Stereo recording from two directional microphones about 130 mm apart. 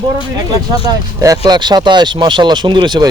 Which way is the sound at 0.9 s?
25° right (ahead or behind).